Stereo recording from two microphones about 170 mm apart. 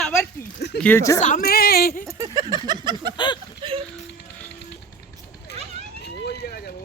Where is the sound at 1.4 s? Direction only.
65° left (ahead or behind).